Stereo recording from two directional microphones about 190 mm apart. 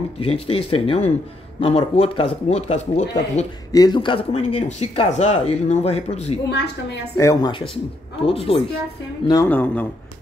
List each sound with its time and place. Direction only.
0.2 s speech: 30° left (ahead or behind)
3.7 s speech: 20° left (ahead or behind)
6.5 s a woman's voice: 65° left (ahead or behind)
7.2 s a man's voice: 20° left (ahead or behind)
9.3 s speech: 15° left (ahead or behind)